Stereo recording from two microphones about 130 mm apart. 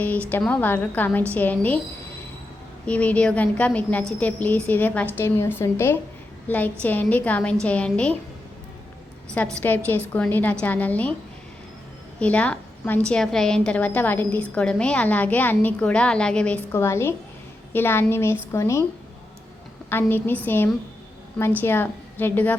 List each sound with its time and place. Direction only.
0.0 s a woman's voice: 10° left (ahead or behind)
2.8 s a woman's voice: 10° left (ahead or behind)
9.3 s a woman's voice: 10° left (ahead or behind)
12.2 s a woman's voice: 10° left (ahead or behind)
19.9 s a woman's voice: 15° left (ahead or behind)